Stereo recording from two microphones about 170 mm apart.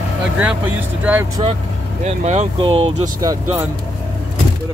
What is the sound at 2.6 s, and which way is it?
Speech, 25° right (ahead or behind).